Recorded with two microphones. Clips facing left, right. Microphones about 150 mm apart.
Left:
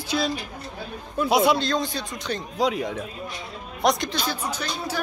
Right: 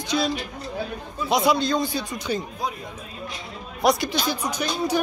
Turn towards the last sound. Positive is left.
turn(degrees=-15)  # may be behind; listen again after turning